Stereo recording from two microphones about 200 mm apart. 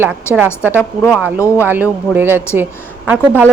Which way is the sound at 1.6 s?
10° right (ahead or behind).